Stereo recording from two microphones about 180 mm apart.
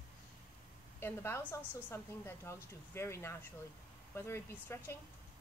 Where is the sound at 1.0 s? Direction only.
15° left (ahead or behind).